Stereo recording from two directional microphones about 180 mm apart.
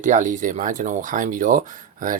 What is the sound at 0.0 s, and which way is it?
Speech, 45° right (ahead or behind).